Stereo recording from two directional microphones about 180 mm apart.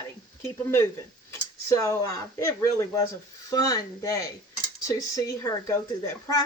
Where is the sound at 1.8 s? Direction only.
15° left (ahead or behind).